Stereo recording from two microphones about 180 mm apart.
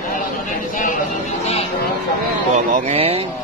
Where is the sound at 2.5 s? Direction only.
40° right (ahead or behind).